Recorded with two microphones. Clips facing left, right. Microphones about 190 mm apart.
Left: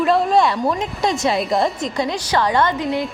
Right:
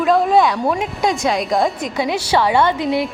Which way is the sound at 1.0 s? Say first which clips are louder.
Even; centre (ahead or behind).